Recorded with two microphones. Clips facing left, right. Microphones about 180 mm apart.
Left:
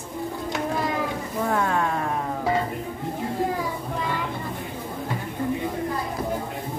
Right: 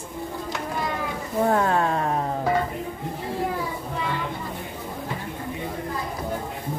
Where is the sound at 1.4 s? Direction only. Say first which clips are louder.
Right 3 dB; 40° right (ahead or behind).